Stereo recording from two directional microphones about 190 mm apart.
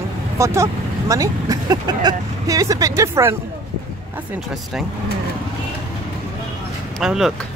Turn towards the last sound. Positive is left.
turn(degrees=0)  # may be behind; listen again after turning